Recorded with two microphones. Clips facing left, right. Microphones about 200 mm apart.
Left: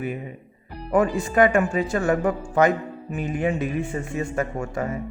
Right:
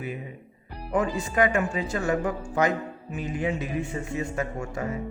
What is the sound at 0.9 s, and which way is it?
Speech, 55° left (ahead or behind).